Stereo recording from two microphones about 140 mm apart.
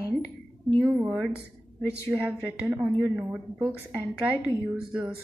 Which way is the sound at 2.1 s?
5° right (ahead or behind).